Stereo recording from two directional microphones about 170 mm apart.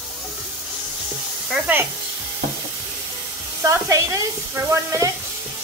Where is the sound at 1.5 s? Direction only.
10° right (ahead or behind).